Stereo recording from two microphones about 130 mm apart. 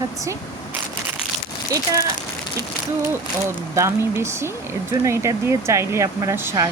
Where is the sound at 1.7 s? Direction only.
25° right (ahead or behind).